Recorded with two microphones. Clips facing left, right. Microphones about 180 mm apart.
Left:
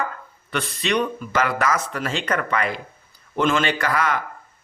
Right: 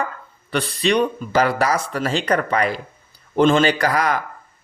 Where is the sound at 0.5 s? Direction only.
35° right (ahead or behind).